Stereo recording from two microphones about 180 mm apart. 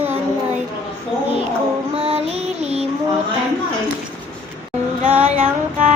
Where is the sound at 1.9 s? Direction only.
35° right (ahead or behind).